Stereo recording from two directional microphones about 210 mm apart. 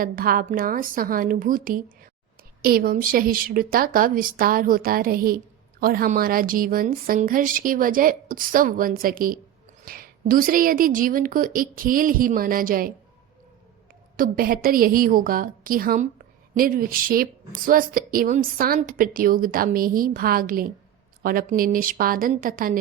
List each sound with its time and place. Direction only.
0.0 s a woman's voice: 45° right (ahead or behind)
14.2 s a woman's voice: 45° right (ahead or behind)